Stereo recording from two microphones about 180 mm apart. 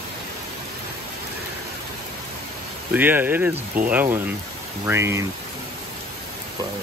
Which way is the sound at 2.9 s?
10° right (ahead or behind).